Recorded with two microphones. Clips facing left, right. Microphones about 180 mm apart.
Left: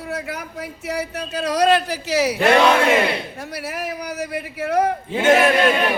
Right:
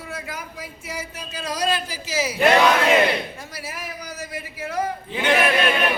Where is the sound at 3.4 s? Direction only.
65° left (ahead or behind).